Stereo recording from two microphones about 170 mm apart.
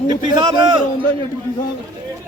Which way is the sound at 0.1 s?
25° right (ahead or behind).